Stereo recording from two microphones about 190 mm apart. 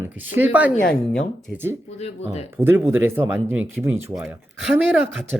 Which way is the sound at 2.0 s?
35° left (ahead or behind).